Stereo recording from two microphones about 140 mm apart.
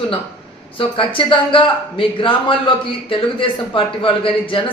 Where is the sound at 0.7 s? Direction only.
40° left (ahead or behind).